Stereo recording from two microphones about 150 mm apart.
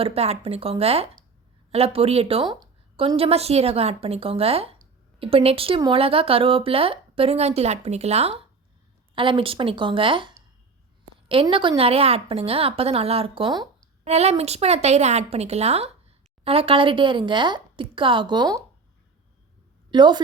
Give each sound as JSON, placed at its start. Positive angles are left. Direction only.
{"t": 0.0, "sound": "a woman's voice", "side_deg": -40}
{"t": 4.8, "sound": "a sound", "side_deg": -40}
{"t": 5.8, "sound": "a woman's voice", "side_deg": -35}
{"t": 11.4, "sound": "a woman's voice", "side_deg": -35}
{"t": 14.0, "sound": "a woman's voice", "side_deg": -45}
{"t": 19.9, "sound": "a woman's voice", "side_deg": -30}